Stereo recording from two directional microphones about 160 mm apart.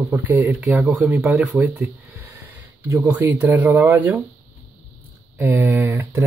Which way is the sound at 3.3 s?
10° right (ahead or behind).